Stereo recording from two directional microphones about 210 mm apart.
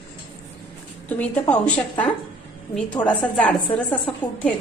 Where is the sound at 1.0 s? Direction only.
5° left (ahead or behind).